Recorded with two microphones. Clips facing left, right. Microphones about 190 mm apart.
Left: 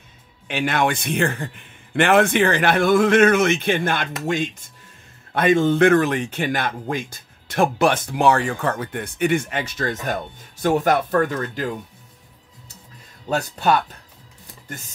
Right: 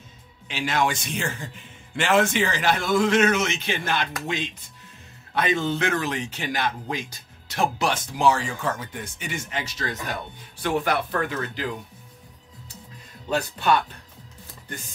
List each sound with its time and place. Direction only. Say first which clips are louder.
0.5 s a man's voice: left 4 dB; 60° left (ahead or behind)
13.3 s a man's voice: left 2 dB; 40° left (ahead or behind)